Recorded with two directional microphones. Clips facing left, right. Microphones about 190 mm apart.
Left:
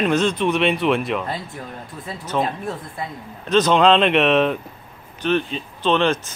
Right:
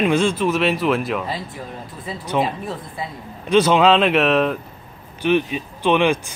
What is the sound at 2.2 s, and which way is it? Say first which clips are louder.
Speech: right 1 dB; 15° right (ahead or behind).